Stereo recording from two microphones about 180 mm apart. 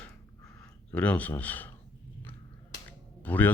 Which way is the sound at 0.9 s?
10° left (ahead or behind).